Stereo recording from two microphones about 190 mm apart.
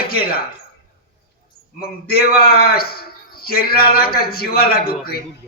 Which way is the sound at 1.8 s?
55° left (ahead or behind).